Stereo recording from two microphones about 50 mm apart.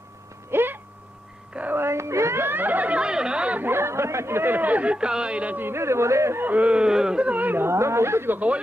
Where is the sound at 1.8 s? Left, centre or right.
Right.